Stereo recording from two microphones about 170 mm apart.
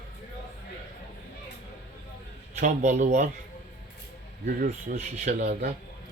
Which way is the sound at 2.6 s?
45° right (ahead or behind).